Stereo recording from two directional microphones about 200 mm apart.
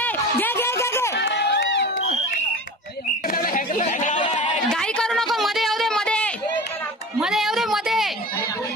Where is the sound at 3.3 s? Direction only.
45° left (ahead or behind).